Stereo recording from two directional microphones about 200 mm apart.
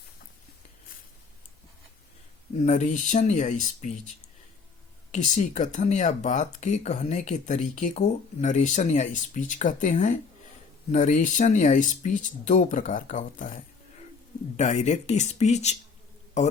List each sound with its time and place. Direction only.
2.6 s speech: 35° left (ahead or behind)
5.1 s speech: 40° left (ahead or behind)